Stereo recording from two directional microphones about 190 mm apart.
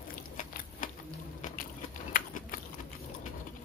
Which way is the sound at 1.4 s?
45° left (ahead or behind).